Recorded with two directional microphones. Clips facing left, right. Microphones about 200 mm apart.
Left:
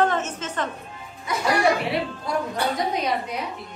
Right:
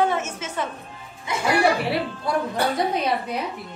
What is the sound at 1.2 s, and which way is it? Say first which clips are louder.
Speech: right 1 dB; 30° right (ahead or behind).